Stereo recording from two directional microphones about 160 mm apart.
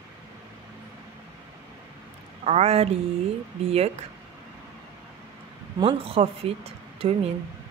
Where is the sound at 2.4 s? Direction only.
40° right (ahead or behind).